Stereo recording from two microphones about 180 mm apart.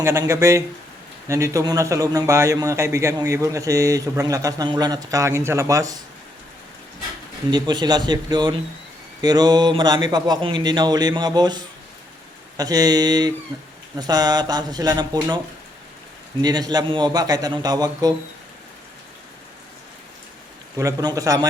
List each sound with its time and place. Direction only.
0.0 s a man's voice: 15° right (ahead or behind)
7.5 s speech: 25° right (ahead or behind)
16.4 s speech: 20° right (ahead or behind)
20.7 s speech: 20° right (ahead or behind)